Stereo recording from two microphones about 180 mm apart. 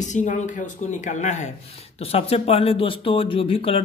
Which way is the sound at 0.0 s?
45° left (ahead or behind).